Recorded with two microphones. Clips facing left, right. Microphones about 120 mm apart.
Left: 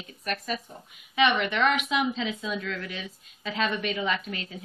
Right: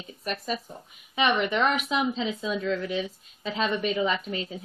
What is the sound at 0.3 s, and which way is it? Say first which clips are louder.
Speech: right 1 dB; centre (ahead or behind).